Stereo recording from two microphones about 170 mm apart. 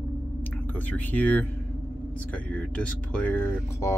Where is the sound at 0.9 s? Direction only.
10° left (ahead or behind).